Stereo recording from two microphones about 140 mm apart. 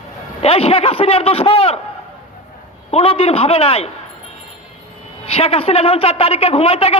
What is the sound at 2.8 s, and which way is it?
A woman's voice, 45° left (ahead or behind).